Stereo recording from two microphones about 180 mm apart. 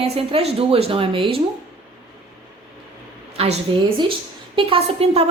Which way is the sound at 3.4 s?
35° right (ahead or behind).